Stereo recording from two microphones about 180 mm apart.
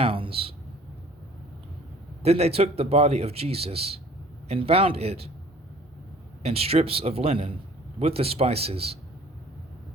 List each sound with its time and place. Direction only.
0.0 s a sound: 30° right (ahead or behind)
2.2 s speech: 35° right (ahead or behind)
6.4 s speech: 35° right (ahead or behind)